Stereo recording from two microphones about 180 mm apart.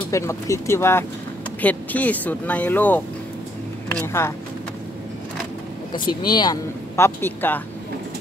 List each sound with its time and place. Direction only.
0.1 s speech: 15° left (ahead or behind)
5.9 s speech: 25° left (ahead or behind)